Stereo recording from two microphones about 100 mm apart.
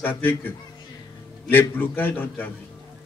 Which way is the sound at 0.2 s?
20° left (ahead or behind).